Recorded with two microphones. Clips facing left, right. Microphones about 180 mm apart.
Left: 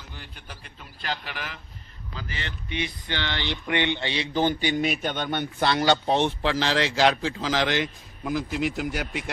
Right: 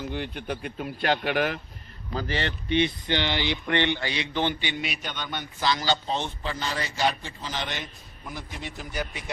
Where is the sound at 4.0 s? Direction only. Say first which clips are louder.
Left 1 dB; 25° left (ahead or behind).